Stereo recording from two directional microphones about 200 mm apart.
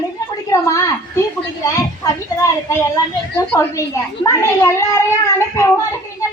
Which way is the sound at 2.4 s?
15° left (ahead or behind).